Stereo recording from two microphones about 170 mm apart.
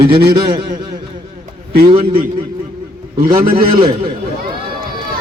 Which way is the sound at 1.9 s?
30° right (ahead or behind).